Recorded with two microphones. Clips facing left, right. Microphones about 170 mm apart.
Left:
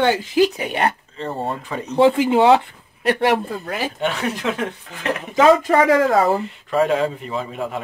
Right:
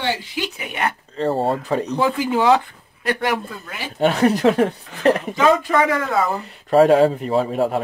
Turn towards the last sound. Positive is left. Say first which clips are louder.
# right 7 dB
turn(degrees=-40)  # may be behind; listen again after turning